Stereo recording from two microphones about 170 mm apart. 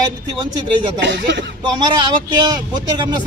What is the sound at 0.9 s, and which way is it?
Speech, 90° right.